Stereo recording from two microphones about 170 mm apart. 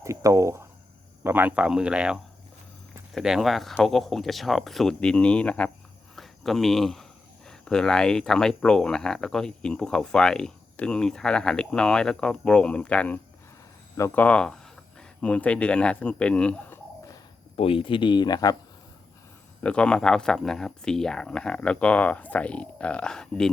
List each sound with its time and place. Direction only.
0.0 s a sound: 20° right (ahead or behind)
1.2 s speech: 10° right (ahead or behind); by 17.2 s 10° left (ahead or behind)
17.6 s speech: 30° left (ahead or behind)
19.6 s speech: 5° left (ahead or behind)